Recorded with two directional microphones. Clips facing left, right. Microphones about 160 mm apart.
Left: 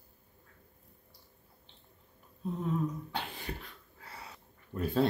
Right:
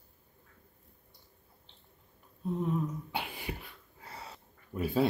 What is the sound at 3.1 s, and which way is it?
Beatboxing, 10° right (ahead or behind).